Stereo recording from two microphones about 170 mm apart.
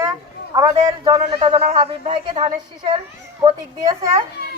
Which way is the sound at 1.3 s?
35° right (ahead or behind).